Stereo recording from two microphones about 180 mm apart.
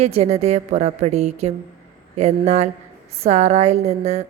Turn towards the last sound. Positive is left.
turn(degrees=-35)  # may be behind; listen again after turning